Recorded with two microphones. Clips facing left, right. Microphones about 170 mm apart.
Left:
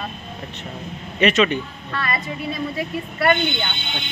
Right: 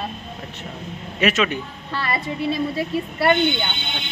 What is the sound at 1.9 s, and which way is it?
A woman's voice, 30° right (ahead or behind).